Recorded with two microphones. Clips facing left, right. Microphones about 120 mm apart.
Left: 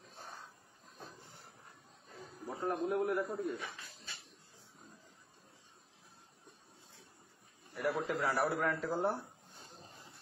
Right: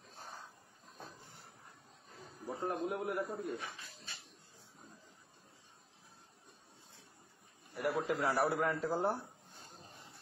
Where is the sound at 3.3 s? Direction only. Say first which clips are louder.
Left 2 dB; 25° right (ahead or behind).